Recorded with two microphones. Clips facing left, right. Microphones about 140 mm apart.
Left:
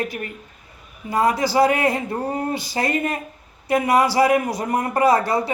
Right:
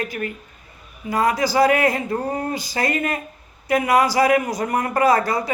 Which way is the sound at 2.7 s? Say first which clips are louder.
Right 1 dB; 25° left (ahead or behind).